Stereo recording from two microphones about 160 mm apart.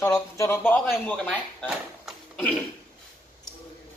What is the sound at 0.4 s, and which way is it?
Speech, 15° left (ahead or behind).